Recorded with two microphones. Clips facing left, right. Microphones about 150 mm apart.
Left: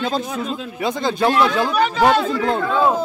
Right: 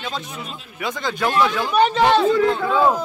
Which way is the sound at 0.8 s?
30° left (ahead or behind).